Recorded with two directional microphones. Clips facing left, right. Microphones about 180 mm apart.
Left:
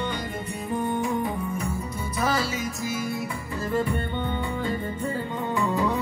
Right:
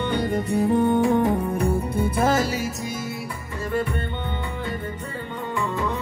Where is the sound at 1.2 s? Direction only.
60° right (ahead or behind).